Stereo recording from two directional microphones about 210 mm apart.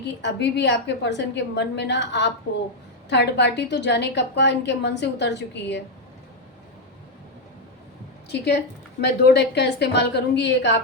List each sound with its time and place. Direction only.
0.2 s a woman's voice: 55° left (ahead or behind)
8.3 s a woman's voice: 50° left (ahead or behind)